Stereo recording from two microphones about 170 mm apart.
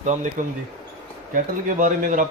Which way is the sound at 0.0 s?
45° right (ahead or behind).